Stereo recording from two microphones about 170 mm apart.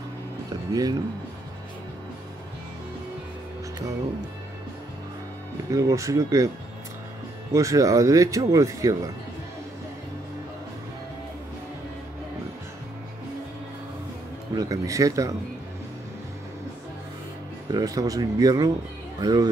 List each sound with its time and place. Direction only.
0.5 s speech: 25° right (ahead or behind)
5.7 s speech: 20° right (ahead or behind)
7.5 s speech: 20° right (ahead or behind)
14.5 s speech: 20° right (ahead or behind)
17.6 s speech: 20° right (ahead or behind)